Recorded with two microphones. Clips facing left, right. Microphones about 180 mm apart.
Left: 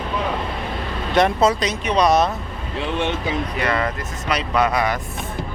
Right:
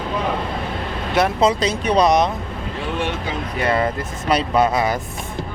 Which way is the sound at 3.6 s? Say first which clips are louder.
Right 6 dB; 25° right (ahead or behind).